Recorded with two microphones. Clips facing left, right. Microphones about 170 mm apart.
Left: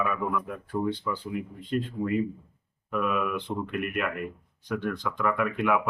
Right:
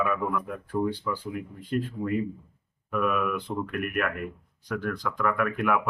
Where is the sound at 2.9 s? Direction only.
5° right (ahead or behind).